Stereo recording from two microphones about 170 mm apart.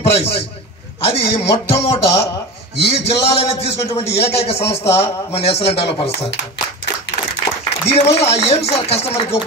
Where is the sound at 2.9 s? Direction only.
35° left (ahead or behind).